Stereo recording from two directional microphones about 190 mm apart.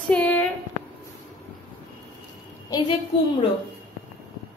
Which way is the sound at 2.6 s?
20° left (ahead or behind).